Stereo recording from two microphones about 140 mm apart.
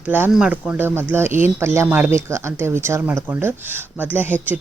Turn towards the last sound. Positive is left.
turn(degrees=-15)  # may be behind; listen again after turning